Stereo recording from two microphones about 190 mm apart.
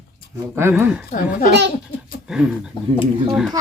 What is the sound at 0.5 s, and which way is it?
Speech, 10° right (ahead or behind).